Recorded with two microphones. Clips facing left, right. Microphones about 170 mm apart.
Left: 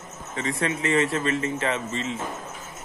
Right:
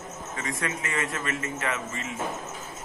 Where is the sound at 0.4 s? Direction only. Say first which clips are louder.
Left 6 dB; 30° left (ahead or behind).